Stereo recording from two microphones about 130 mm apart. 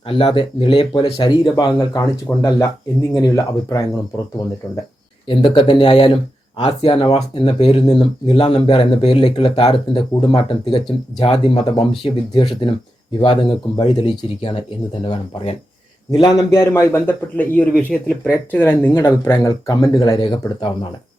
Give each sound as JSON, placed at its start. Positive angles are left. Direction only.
{"t": 0.1, "sound": "speech", "side_deg": 45}
{"t": 1.2, "sound": "speech", "side_deg": 35}
{"t": 5.3, "sound": "speech", "side_deg": 40}
{"t": 16.1, "sound": "a man's voice", "side_deg": 30}
{"t": 19.4, "sound": "speech", "side_deg": 30}